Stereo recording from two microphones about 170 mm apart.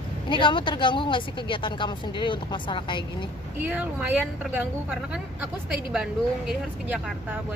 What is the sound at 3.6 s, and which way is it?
A woman's voice, 10° right (ahead or behind).